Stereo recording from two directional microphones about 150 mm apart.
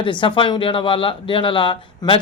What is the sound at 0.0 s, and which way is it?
Speech, 35° left (ahead or behind).